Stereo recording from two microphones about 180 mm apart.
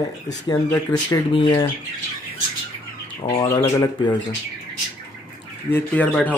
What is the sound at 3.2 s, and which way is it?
Speech, 15° left (ahead or behind).